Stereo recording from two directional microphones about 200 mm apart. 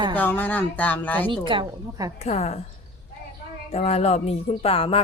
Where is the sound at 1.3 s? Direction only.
25° right (ahead or behind).